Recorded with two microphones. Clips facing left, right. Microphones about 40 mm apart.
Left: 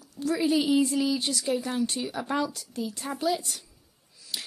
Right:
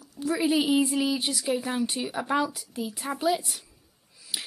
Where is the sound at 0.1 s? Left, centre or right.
Centre.